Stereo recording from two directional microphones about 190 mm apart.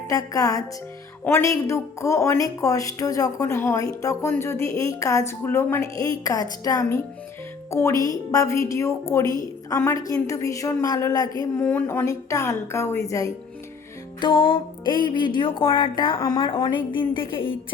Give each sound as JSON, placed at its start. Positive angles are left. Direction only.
{"t": 0.1, "sound": "speech", "side_deg": 20}